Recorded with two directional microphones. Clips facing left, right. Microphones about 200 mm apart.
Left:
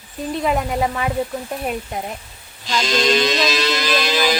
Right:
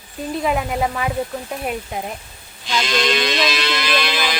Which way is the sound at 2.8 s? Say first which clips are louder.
Left 3 dB; 40° left (ahead or behind).